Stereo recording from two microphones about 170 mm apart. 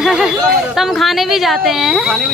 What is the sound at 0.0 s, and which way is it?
Speech, 5° right (ahead or behind).